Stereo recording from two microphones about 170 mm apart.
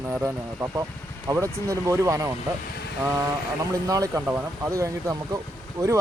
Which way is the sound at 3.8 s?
20° right (ahead or behind).